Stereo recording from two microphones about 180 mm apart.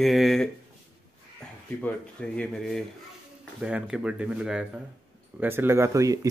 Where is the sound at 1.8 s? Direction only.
5° left (ahead or behind).